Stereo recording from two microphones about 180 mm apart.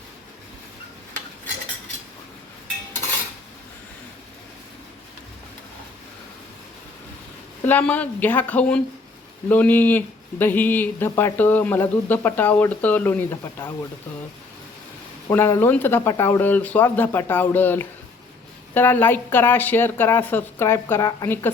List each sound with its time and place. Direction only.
7.6 s speech: 10° left (ahead or behind)
15.3 s speech: 15° left (ahead or behind)